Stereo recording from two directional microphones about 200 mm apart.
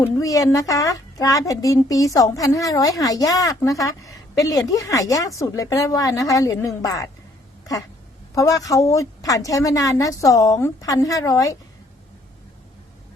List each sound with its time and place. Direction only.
0.0 s a woman's voice: 15° left (ahead or behind)
8.4 s a woman's voice: 15° left (ahead or behind)